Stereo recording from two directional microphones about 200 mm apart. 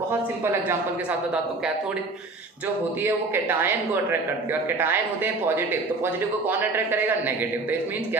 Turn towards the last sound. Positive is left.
turn(degrees=-10)  # may be behind; listen again after turning